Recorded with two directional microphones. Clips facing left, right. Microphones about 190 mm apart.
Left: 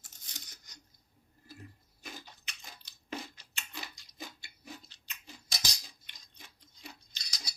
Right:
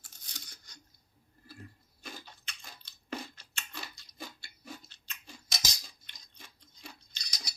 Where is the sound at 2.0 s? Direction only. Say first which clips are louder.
Right 1 dB; 15° left (ahead or behind).